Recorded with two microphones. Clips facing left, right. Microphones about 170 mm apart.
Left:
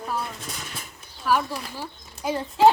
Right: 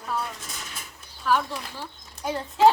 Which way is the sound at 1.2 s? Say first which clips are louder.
Left 1 dB; 10° left (ahead or behind).